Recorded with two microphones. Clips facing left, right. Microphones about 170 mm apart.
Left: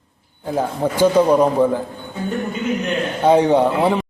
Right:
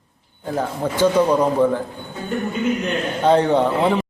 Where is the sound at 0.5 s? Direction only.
10° left (ahead or behind).